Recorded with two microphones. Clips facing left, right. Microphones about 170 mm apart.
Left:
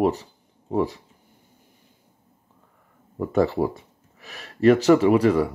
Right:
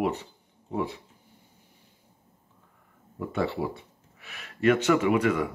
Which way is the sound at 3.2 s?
45° left (ahead or behind).